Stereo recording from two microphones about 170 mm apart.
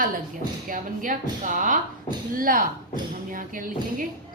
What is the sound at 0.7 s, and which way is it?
A woman's voice, 50° right (ahead or behind).